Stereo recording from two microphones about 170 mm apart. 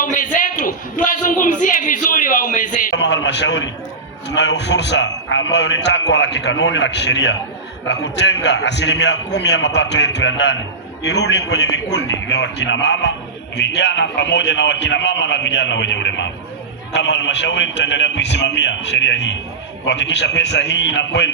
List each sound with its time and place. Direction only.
0.0 s speech: 50° left (ahead or behind)
2.9 s a man's voice: 90° left